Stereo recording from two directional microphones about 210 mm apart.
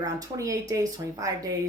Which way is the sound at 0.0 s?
15° right (ahead or behind).